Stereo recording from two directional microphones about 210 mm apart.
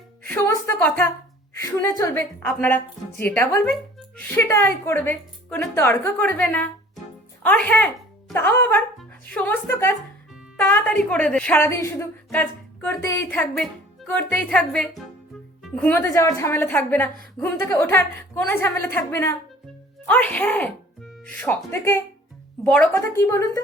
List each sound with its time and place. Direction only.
0.3 s a woman's voice: 10° left (ahead or behind)